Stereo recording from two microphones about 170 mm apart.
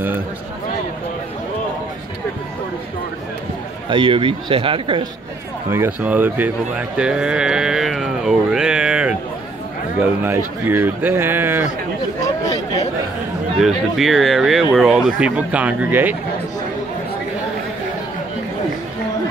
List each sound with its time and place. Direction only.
3.9 s speech: 30° right (ahead or behind)
5.7 s speech: 10° right (ahead or behind)
7.0 s a sound: 5° right (ahead or behind)
10.2 s speech: 10° right (ahead or behind)
12.2 s a sound: 20° left (ahead or behind)
13.6 s speech: centre (ahead or behind)